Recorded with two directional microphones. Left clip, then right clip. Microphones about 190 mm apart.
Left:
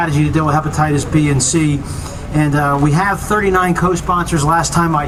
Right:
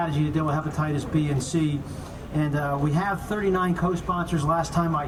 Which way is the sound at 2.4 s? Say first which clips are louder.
Left 12 dB; 30° left (ahead or behind).